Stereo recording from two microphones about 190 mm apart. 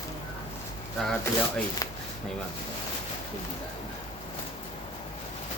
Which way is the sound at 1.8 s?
15° left (ahead or behind).